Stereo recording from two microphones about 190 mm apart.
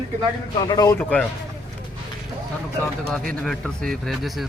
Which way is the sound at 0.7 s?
15° left (ahead or behind).